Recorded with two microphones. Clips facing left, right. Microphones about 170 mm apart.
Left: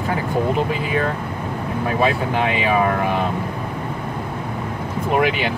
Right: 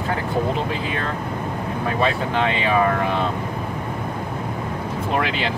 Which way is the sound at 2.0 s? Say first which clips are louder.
Left 2 dB; 10° left (ahead or behind).